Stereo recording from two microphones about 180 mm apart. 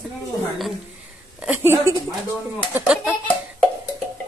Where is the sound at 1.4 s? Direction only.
10° right (ahead or behind).